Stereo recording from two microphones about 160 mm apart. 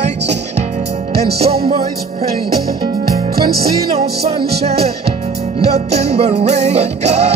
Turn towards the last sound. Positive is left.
turn(degrees=-45)  # may be behind; listen again after turning